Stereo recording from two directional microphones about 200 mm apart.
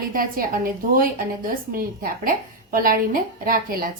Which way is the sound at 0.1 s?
45° right (ahead or behind).